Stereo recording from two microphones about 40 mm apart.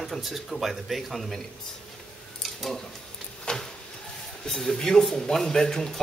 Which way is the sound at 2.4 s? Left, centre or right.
Centre.